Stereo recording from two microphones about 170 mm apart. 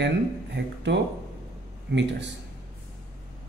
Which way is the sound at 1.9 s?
90° right.